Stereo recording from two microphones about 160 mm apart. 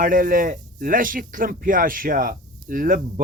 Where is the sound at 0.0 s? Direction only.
60° right (ahead or behind).